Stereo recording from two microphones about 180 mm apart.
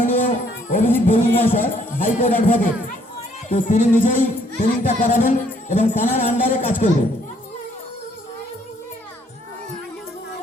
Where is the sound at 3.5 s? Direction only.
45° left (ahead or behind).